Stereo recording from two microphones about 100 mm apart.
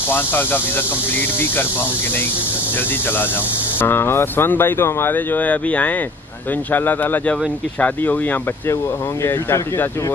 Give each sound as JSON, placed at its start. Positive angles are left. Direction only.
{"t": 0.1, "sound": "speech", "side_deg": 20}
{"t": 3.8, "sound": "speech", "side_deg": 20}